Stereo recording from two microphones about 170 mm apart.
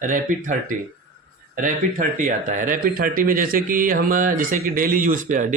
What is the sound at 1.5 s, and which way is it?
Speech, 50° right (ahead or behind).